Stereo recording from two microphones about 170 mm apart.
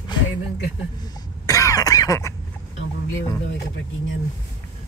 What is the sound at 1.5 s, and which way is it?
Cough, 20° left (ahead or behind).